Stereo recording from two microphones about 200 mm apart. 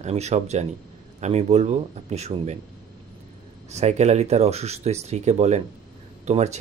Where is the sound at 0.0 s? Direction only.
35° right (ahead or behind).